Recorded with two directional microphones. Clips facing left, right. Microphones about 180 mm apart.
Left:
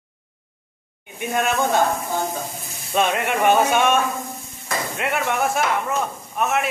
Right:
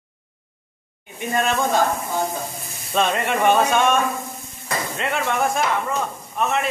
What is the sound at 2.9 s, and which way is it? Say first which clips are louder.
A man's voice: even; 5° left (ahead or behind).